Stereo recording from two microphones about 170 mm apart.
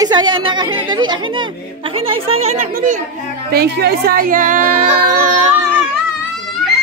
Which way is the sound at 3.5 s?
65° right (ahead or behind).